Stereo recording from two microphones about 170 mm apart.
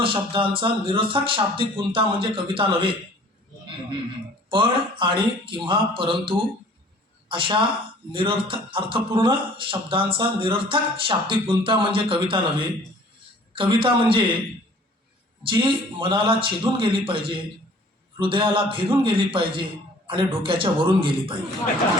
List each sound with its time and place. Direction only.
0.0 s a man's voice: 30° right (ahead or behind)
4.4 s a man's voice: 30° right (ahead or behind)
15.4 s a man's voice: 30° right (ahead or behind)